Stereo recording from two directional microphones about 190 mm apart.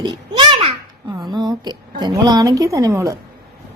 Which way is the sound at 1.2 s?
20° right (ahead or behind).